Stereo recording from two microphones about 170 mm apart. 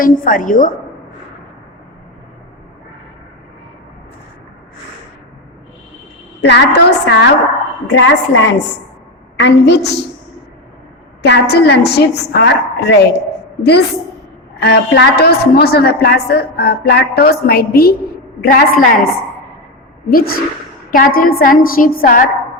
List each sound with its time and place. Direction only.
0.0 s a woman's voice: 50° left (ahead or behind)
6.4 s a woman's voice: 80° left
7.9 s a woman's voice: 90° left
11.2 s a woman's voice: 75° left (ahead or behind); by 18.6 s 60° left (ahead or behind)
20.1 s a woman's voice: 60° left (ahead or behind)